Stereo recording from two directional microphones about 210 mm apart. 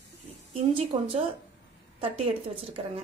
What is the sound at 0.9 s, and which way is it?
Speech, 25° right (ahead or behind).